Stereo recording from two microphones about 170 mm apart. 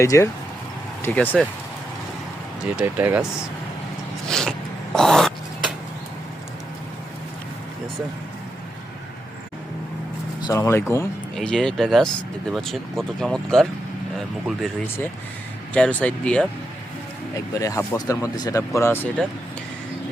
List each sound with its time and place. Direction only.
0.0 s speech: 15° left (ahead or behind)
2.7 s speech: 10° right (ahead or behind)
4.9 s a sound: centre (ahead or behind)
10.4 s speech: 20° left (ahead or behind)
11.3 s speech: 5° left (ahead or behind)
15.7 s speech: 10° left (ahead or behind)
17.5 s speech: 20° left (ahead or behind)